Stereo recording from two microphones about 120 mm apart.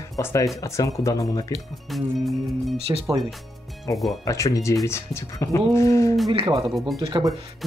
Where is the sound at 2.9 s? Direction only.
25° right (ahead or behind).